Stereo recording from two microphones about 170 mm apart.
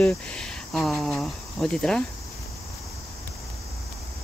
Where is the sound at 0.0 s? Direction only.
5° left (ahead or behind).